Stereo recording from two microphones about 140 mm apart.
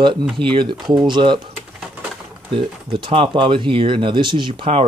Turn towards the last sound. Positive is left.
turn(degrees=-45)  # may be behind; listen again after turning